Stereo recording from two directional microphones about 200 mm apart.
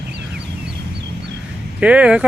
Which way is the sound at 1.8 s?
5° right (ahead or behind).